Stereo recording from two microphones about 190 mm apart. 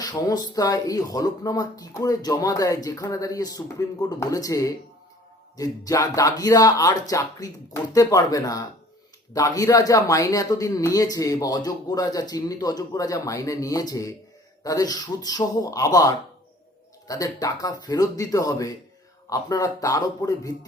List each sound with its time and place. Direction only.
0.0 s speech: 20° left (ahead or behind)